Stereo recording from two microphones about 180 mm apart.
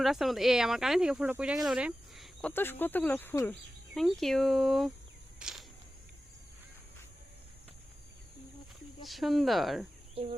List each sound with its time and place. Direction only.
0.0 s speech: centre (ahead or behind)
1.6 s cricket: 5° right (ahead or behind)
2.5 s speech: 10° left (ahead or behind)
3.5 s speech: centre (ahead or behind)
5.4 s a sound: 5° right (ahead or behind)
9.0 s speech: centre (ahead or behind)
10.2 s speech: 30° right (ahead or behind)